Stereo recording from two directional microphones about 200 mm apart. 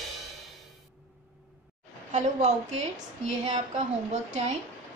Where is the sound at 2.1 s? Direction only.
35° right (ahead or behind).